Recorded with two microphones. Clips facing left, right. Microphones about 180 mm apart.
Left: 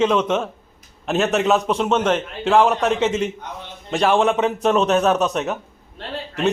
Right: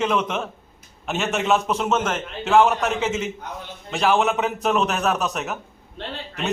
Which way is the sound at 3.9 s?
35° left (ahead or behind).